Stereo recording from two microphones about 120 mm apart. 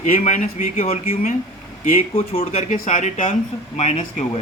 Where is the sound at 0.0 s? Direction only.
80° left.